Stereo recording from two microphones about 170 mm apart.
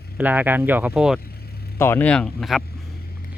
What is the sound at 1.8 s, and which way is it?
Speech, 10° left (ahead or behind).